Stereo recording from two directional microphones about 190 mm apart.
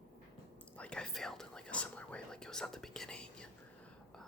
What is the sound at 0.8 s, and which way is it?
Whispering, 5° left (ahead or behind).